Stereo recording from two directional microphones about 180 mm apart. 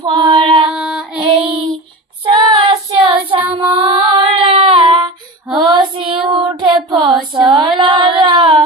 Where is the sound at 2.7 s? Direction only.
30° right (ahead or behind).